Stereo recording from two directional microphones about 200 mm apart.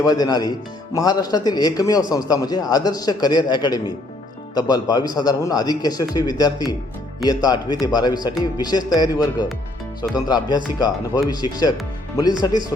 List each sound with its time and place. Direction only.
0.0 s a man's voice: 20° left (ahead or behind)